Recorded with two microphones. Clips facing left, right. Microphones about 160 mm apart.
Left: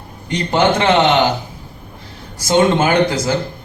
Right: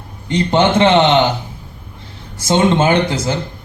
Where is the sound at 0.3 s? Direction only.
25° right (ahead or behind).